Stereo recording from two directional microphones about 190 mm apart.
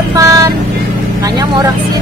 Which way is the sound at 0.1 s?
15° right (ahead or behind).